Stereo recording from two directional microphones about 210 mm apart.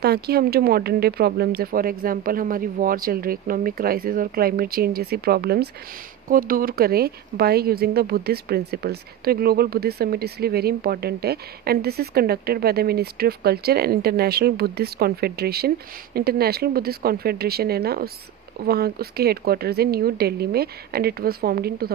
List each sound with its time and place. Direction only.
0.0 s speech: 50° right (ahead or behind)